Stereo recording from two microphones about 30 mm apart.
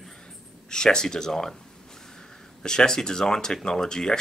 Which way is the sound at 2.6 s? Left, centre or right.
Left.